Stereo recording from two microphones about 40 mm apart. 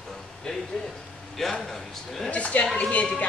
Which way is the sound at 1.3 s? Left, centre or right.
Centre.